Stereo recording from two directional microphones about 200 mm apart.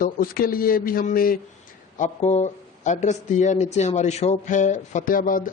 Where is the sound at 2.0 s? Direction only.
35° left (ahead or behind).